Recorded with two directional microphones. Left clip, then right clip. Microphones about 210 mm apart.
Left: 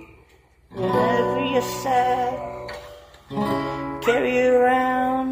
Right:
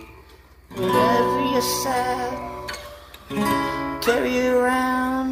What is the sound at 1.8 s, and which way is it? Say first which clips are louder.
Music: left 3 dB; 5° right (ahead or behind).